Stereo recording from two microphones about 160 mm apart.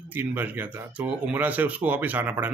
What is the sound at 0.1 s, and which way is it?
Speech, 10° right (ahead or behind).